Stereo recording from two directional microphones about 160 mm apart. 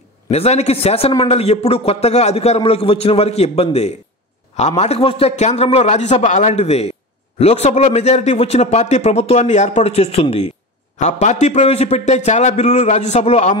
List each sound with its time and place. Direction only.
0.3 s a man's voice: 40° left (ahead or behind)